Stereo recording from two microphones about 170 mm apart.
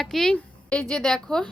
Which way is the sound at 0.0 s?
5° left (ahead or behind).